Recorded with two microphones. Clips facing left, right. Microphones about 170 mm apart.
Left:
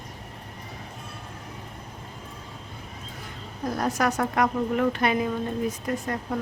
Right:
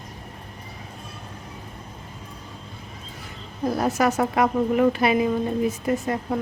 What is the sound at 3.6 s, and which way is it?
Speech, 5° right (ahead or behind).